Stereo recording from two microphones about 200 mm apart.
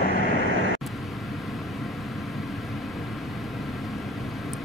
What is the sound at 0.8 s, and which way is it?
Vehicle, centre (ahead or behind).